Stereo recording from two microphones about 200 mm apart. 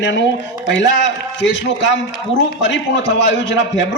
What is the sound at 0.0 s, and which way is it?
A man's voice, 65° left (ahead or behind).